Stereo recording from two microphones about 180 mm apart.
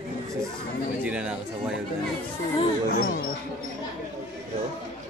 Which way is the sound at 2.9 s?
55° left (ahead or behind).